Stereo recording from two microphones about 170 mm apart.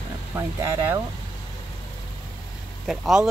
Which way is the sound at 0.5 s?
15° right (ahead or behind).